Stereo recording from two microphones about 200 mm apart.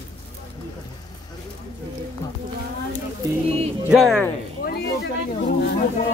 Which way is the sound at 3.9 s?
Centre (ahead or behind).